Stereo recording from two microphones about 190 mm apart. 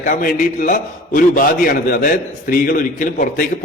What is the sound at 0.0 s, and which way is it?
A man's voice, 45° left (ahead or behind).